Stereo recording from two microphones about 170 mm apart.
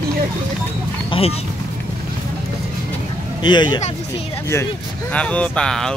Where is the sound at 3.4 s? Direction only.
25° left (ahead or behind).